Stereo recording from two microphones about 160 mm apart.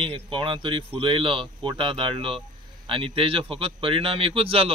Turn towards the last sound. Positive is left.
turn(degrees=-35)  # may be behind; listen again after turning